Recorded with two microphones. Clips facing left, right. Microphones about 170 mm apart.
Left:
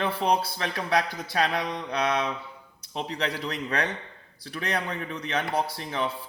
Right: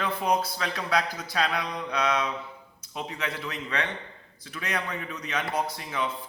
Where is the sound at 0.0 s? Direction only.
30° left (ahead or behind).